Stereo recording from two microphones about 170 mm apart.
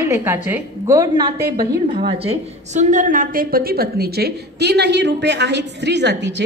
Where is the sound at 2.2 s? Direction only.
40° right (ahead or behind).